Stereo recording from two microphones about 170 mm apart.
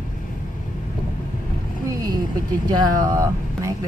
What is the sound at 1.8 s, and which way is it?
Speech, 25° right (ahead or behind).